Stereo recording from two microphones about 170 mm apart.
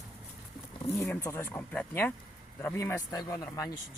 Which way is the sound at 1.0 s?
15° left (ahead or behind).